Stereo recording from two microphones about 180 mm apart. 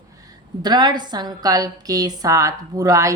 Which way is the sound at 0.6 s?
25° right (ahead or behind).